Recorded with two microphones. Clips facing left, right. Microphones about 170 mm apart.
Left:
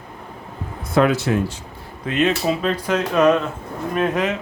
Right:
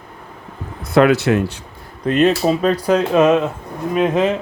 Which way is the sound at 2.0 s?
40° right (ahead or behind).